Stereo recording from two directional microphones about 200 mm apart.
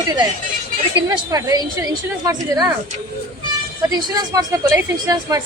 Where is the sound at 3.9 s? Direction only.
20° right (ahead or behind).